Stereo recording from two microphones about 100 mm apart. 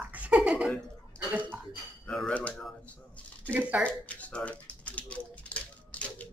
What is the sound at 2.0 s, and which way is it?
Speech, 10° left (ahead or behind).